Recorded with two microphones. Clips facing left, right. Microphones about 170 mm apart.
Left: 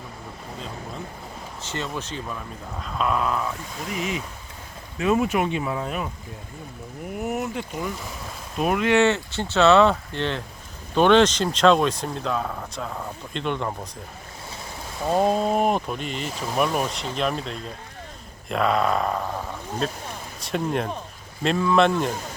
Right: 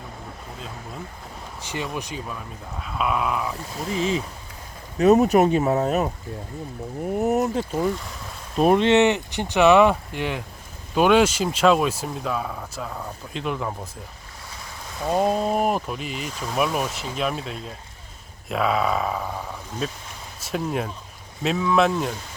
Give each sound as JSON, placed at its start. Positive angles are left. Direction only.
{"t": 1.6, "sound": "speech", "side_deg": -15}
{"t": 3.8, "sound": "speech", "side_deg": -30}
{"t": 15.0, "sound": "speech", "side_deg": 5}
{"t": 20.4, "sound": "speech", "side_deg": 0}